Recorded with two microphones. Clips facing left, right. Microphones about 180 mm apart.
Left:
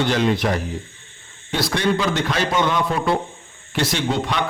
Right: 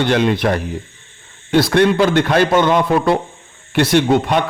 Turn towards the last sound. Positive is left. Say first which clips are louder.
# right 8 dB
turn(degrees=-55)  # may be behind; listen again after turning